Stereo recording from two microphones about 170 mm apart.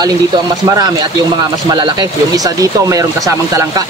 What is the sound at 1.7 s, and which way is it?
Speech, 25° right (ahead or behind).